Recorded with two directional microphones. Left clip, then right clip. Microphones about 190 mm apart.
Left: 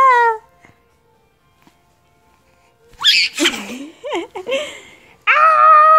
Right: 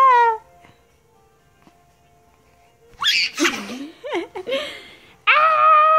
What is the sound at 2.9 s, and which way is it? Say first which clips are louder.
Sneeze: left 5 dB; 10° right (ahead or behind).